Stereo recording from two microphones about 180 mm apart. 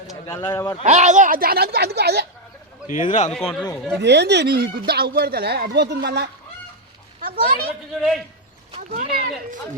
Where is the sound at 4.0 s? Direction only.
70° right (ahead or behind).